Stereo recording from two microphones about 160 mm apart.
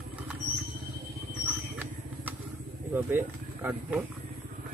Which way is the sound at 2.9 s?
15° right (ahead or behind).